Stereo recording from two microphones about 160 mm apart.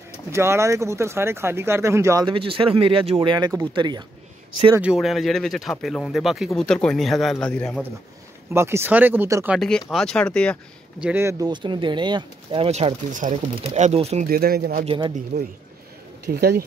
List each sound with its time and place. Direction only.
0.3 s speech: 15° right (ahead or behind)
2.2 s speech: 35° right (ahead or behind)
4.7 s speech: 5° right (ahead or behind)
8.5 s speech: 15° right (ahead or behind)
9.6 s speech: 5° left (ahead or behind)
11.0 s speech: 5° right (ahead or behind)
11.2 s speech: 25° right (ahead or behind)
13.1 s speech: 55° right (ahead or behind)
14.2 s speech: 70° right (ahead or behind)
14.9 s speech: 30° right (ahead or behind)
16.3 s speech: 75° right (ahead or behind)